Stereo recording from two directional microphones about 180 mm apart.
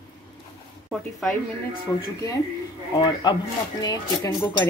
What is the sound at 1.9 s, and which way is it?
Speech, 20° left (ahead or behind).